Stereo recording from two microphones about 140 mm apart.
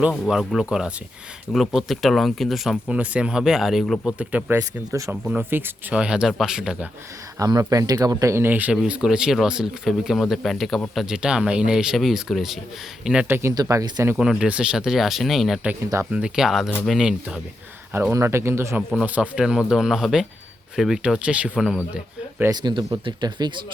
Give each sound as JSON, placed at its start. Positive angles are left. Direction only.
{"t": 0.1, "sound": "speech", "side_deg": 0}
{"t": 4.9, "sound": "speech", "side_deg": -25}
{"t": 5.2, "sound": "speech", "side_deg": -10}
{"t": 7.3, "sound": "speech", "side_deg": -25}
{"t": 13.2, "sound": "speech", "side_deg": -15}
{"t": 14.1, "sound": "speech", "side_deg": -5}
{"t": 15.8, "sound": "speech", "side_deg": -20}
{"t": 16.1, "sound": "speech", "side_deg": -5}
{"t": 18.1, "sound": "speech", "side_deg": -20}
{"t": 22.5, "sound": "speech", "side_deg": -30}